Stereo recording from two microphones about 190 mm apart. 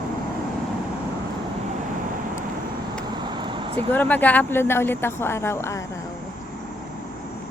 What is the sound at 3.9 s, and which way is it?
Speech, 10° left (ahead or behind).